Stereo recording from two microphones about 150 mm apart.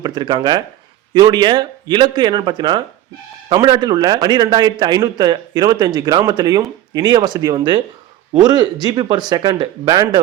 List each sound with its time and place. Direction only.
0.0 s a man's voice: 30° right (ahead or behind)